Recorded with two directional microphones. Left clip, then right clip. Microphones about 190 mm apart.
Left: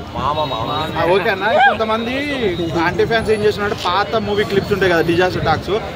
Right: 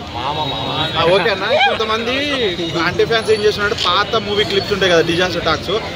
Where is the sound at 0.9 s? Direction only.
55° left (ahead or behind).